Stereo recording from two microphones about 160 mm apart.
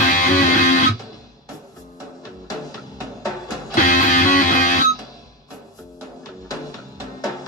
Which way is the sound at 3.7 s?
50° left (ahead or behind).